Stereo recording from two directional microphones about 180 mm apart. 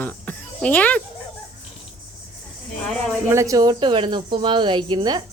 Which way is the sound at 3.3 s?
15° right (ahead or behind).